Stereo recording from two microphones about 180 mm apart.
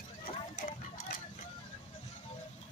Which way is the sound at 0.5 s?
50° left (ahead or behind).